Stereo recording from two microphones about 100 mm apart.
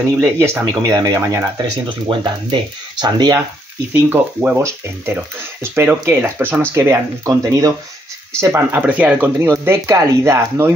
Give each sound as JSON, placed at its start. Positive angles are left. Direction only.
{"t": 0.2, "sound": "speech", "side_deg": -25}
{"t": 1.9, "sound": "speech", "side_deg": -55}
{"t": 3.9, "sound": "speech", "side_deg": -20}
{"t": 8.4, "sound": "speech", "side_deg": -25}
{"t": 9.5, "sound": "speech", "side_deg": -30}